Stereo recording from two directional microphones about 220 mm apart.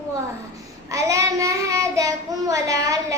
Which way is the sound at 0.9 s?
15° right (ahead or behind).